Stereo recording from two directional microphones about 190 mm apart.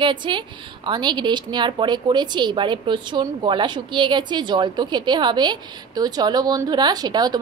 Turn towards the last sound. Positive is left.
turn(degrees=-20)  # may be behind; listen again after turning